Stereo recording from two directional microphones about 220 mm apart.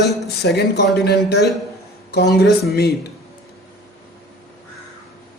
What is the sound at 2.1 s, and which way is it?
Speech, 50° left (ahead or behind).